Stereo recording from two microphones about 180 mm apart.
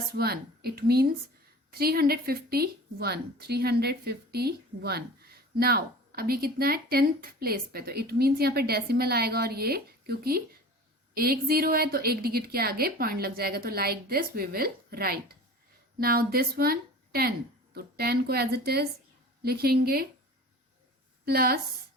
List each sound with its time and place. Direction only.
0.1 s a woman's voice: 60° right (ahead or behind)
21.2 s a woman's voice: 60° right (ahead or behind)